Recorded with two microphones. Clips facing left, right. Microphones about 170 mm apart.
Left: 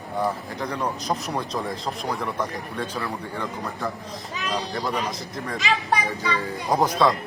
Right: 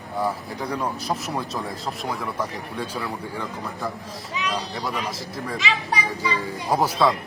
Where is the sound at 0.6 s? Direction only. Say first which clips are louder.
Even; 10° right (ahead or behind).